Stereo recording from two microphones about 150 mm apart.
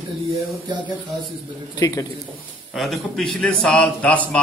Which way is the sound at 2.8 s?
Centre (ahead or behind).